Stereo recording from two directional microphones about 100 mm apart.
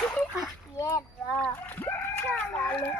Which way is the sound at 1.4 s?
20° left (ahead or behind).